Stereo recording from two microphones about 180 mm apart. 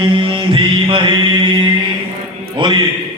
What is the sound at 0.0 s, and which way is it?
Mantra, 30° right (ahead or behind).